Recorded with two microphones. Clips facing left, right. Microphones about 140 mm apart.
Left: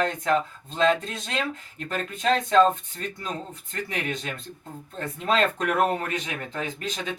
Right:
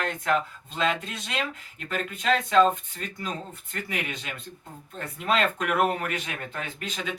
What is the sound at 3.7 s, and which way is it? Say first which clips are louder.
Speech: left 3 dB; 35° left (ahead or behind).